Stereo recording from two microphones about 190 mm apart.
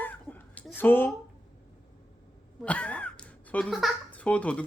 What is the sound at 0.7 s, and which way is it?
Speech, 10° left (ahead or behind).